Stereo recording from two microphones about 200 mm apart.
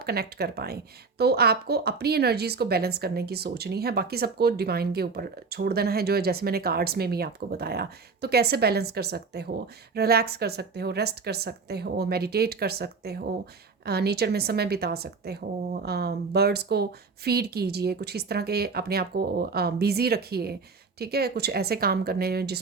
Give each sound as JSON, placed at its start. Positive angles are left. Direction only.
{"t": 0.0, "sound": "speech", "side_deg": -50}